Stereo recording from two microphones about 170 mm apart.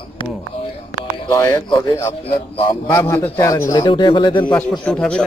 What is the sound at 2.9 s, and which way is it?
A man's voice, 10° left (ahead or behind).